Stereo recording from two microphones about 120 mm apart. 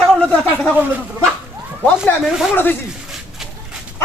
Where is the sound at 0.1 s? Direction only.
10° left (ahead or behind).